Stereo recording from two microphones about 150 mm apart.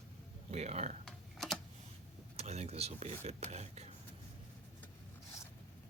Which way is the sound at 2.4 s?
45° right (ahead or behind).